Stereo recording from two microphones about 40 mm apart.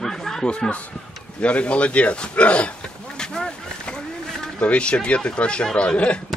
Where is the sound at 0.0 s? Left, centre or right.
Centre.